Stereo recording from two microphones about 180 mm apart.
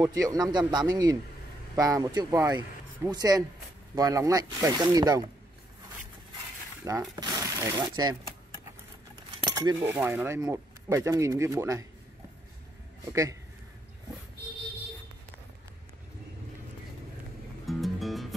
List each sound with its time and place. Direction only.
0.0 s speech: 20° right (ahead or behind)
6.8 s speech: 15° right (ahead or behind)
13.1 s speech: 20° right (ahead or behind)
17.6 s music: centre (ahead or behind)